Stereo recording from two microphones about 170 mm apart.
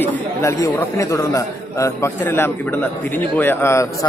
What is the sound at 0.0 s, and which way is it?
A man's voice, 15° left (ahead or behind).